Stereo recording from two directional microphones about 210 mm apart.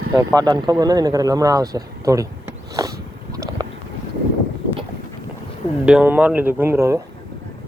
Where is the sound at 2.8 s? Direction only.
15° right (ahead or behind).